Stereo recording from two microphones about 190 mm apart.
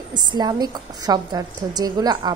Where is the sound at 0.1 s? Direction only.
20° right (ahead or behind).